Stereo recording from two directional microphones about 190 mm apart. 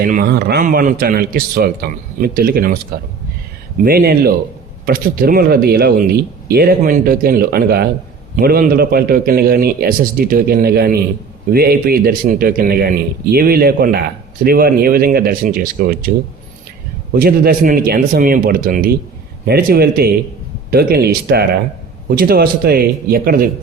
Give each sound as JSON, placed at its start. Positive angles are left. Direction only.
{"t": 0.0, "sound": "speech", "side_deg": -50}
{"t": 3.8, "sound": "speech", "side_deg": -55}
{"t": 17.2, "sound": "speech", "side_deg": -50}